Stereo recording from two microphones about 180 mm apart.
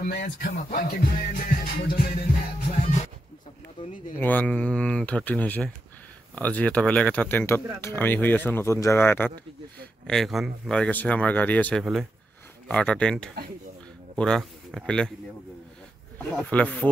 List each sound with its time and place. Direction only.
0.0 s music: 50° left (ahead or behind)
4.2 s speech: 10° left (ahead or behind)
11.8 s a man's voice: centre (ahead or behind)
16.2 s speech: 5° left (ahead or behind)